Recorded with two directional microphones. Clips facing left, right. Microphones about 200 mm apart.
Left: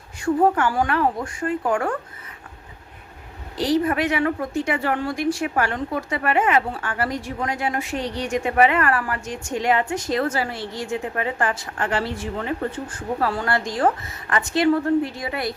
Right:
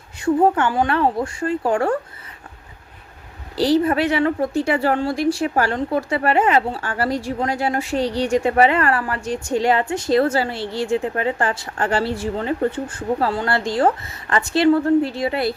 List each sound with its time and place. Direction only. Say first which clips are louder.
0.2 s a woman's voice: right 2 dB; 25° right (ahead or behind)
3.6 s a woman's voice: right 4 dB; 30° right (ahead or behind)